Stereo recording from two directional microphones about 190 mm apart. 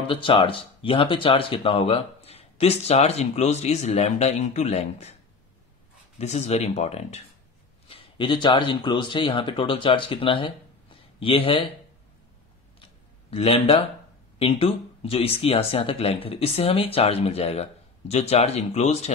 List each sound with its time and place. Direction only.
0.1 s speech: 25° left (ahead or behind)
6.1 s speech: 35° left (ahead or behind)
13.3 s speech: 30° left (ahead or behind)